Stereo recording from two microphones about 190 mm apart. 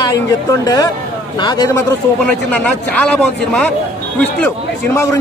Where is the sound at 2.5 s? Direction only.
5° left (ahead or behind).